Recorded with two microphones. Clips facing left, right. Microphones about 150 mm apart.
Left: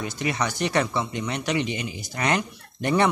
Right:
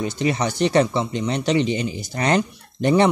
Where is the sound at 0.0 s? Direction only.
25° right (ahead or behind).